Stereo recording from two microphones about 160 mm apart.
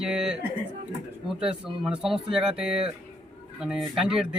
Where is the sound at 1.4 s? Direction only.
5° right (ahead or behind).